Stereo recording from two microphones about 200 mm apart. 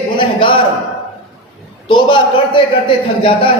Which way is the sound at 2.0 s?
25° left (ahead or behind).